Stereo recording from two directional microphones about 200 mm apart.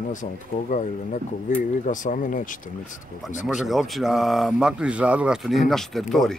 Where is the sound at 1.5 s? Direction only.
40° left (ahead or behind).